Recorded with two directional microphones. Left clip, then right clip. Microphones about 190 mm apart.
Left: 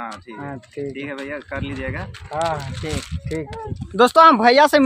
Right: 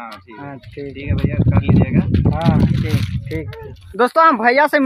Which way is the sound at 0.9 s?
25° left (ahead or behind).